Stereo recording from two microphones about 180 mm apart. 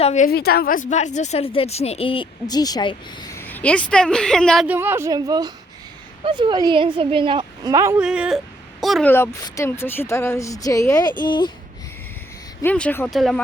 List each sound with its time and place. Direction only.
0.0 s a woman's voice: 40° left (ahead or behind)
0.3 s speech: 60° left (ahead or behind); by 3.3 s 25° left (ahead or behind)
3.3 s speech: 10° left (ahead or behind)
4.6 s a woman's voice: 10° right (ahead or behind)
8.0 s speech: 5° right (ahead or behind)
9.1 s speech: 15° left (ahead or behind)
12.6 s speech: 10° left (ahead or behind)